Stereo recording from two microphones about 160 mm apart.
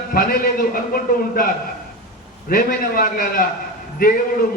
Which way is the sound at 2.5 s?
60° left (ahead or behind).